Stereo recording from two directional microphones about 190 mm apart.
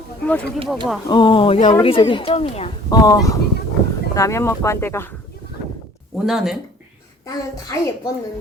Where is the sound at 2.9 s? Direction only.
20° left (ahead or behind).